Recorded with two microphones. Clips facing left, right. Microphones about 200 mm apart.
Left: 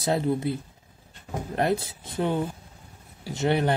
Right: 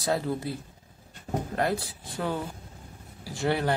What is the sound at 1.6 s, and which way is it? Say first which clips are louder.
Speech: left 5 dB; 20° left (ahead or behind).